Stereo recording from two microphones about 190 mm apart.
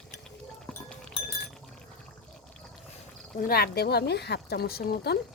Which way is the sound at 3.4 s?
55° left (ahead or behind).